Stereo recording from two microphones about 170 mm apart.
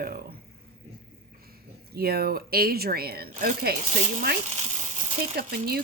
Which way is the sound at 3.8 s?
40° right (ahead or behind).